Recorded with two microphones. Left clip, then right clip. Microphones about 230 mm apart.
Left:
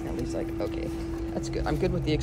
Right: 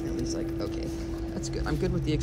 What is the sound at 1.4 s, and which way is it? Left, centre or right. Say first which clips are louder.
Speech: left 2 dB; centre.